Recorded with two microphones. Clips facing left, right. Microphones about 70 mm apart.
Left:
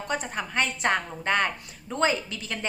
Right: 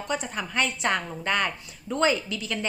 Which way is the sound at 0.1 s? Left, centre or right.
Left.